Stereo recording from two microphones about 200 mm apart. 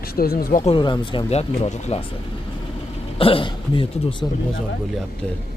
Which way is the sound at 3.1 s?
25° left (ahead or behind).